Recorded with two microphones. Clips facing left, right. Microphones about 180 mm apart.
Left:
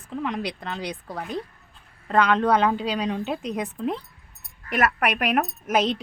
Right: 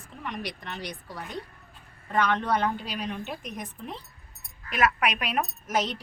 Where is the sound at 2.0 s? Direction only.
90° left; by 3.9 s 70° left (ahead or behind).